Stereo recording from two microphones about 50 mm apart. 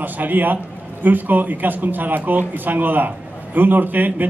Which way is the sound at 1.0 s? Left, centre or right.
Right.